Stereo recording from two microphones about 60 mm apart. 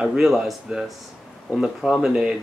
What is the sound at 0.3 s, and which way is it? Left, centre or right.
Speech, centre.